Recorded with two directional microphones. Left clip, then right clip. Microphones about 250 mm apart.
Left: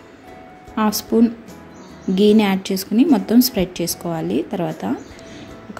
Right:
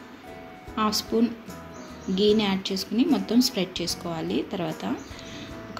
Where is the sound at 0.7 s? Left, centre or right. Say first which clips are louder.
Left 6 dB; left.